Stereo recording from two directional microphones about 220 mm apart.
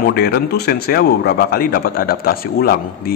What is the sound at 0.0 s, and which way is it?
A man's voice, 45° left (ahead or behind).